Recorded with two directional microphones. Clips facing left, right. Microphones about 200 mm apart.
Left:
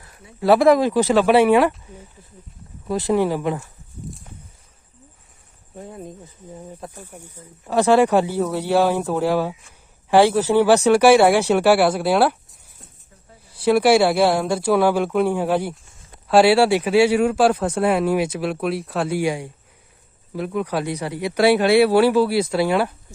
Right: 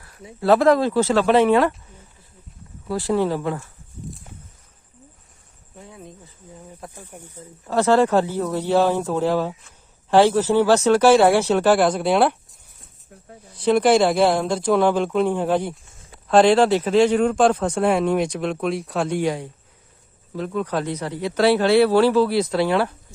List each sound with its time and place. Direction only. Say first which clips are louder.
0.4 s speech: left 2 dB; 10° left (ahead or behind)
2.8 s speech: left 2 dB; 20° left (ahead or behind)
5.7 s speech: left 6 dB; 45° left (ahead or behind)
7.7 s speech: left 1 dB; 15° left (ahead or behind)
13.5 s speech: left 1 dB; 10° left (ahead or behind)